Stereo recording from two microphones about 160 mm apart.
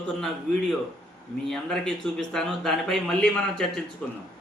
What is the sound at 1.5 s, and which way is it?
Speech, 5° left (ahead or behind).